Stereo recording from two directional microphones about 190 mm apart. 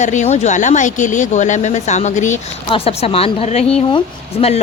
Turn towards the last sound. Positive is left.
turn(degrees=35)  # may be behind; listen again after turning